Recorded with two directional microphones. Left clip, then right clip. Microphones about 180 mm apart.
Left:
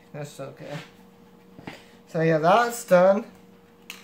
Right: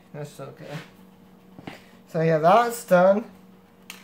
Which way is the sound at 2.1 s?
10° right (ahead or behind).